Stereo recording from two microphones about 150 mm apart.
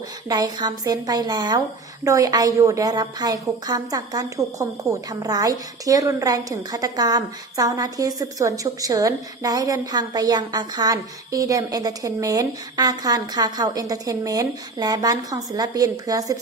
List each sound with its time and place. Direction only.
0.3 s a woman's voice: 25° right (ahead or behind)